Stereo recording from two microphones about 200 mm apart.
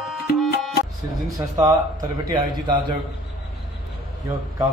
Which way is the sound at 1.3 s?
20° right (ahead or behind).